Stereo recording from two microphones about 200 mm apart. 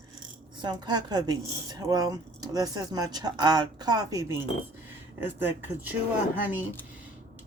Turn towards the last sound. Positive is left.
turn(degrees=-10)  # may be behind; listen again after turning